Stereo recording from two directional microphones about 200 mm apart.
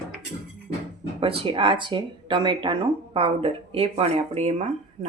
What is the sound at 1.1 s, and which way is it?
Speech, 25° right (ahead or behind).